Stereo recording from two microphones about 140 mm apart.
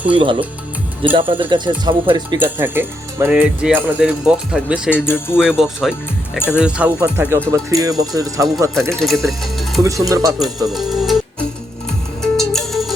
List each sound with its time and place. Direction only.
0.1 s speech: 35° right (ahead or behind)
2.4 s speech: 15° right (ahead or behind)
5.0 s speech: 15° left (ahead or behind)
5.4 s speech: 5° right (ahead or behind); by 9.0 s 20° right (ahead or behind)
9.0 s speech: centre (ahead or behind)
9.8 s speech: 25° right (ahead or behind)
10.7 s music: centre (ahead or behind)
12.2 s music: 5° left (ahead or behind)